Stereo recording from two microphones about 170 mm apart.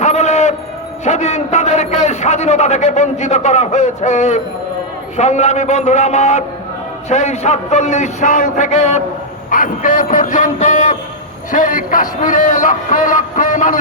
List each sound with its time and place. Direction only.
0.0 s a sound: 40° left (ahead or behind)
1.0 s a man's voice: 40° left (ahead or behind)
9.5 s speech: 50° left (ahead or behind)